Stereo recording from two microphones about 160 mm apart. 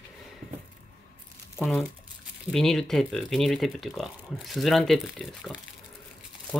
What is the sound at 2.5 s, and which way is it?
Speech, centre (ahead or behind).